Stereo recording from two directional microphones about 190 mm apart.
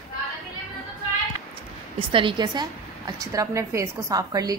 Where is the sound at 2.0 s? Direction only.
25° right (ahead or behind).